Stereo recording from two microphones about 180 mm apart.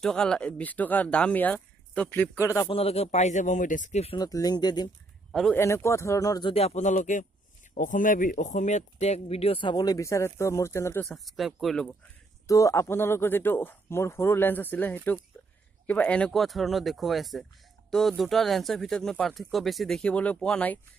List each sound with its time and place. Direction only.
0.0 s speech: 5° left (ahead or behind)
2.7 s speech: 35° left (ahead or behind)
4.2 s speech: 20° left (ahead or behind)
5.3 s speech: centre (ahead or behind)
5.6 s speech: 15° left (ahead or behind)
6.5 s speech: 35° left (ahead or behind); by 11.1 s 15° left (ahead or behind)
11.1 s speech: centre (ahead or behind)
12.4 s speech: 20° left (ahead or behind)